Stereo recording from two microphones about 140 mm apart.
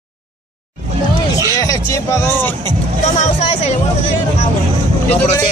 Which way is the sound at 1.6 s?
20° left (ahead or behind).